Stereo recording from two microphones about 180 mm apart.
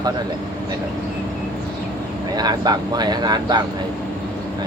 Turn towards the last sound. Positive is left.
turn(degrees=-25)  # may be behind; listen again after turning